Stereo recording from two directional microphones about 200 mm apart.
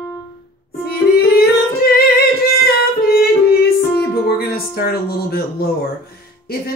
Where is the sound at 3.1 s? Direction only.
50° left (ahead or behind).